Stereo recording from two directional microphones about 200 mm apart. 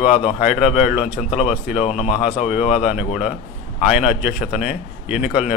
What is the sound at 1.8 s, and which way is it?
Speech, 30° left (ahead or behind).